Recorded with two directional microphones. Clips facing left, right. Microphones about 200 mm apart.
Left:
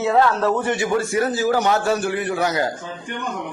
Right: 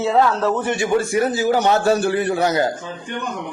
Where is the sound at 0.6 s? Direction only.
20° right (ahead or behind).